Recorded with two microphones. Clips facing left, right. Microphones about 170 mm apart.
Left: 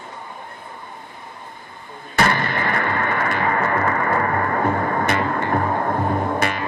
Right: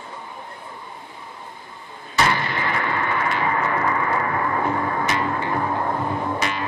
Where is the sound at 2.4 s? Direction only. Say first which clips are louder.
Left 2 dB; 50° left (ahead or behind).